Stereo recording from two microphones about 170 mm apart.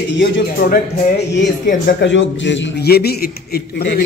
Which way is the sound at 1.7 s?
75° left (ahead or behind).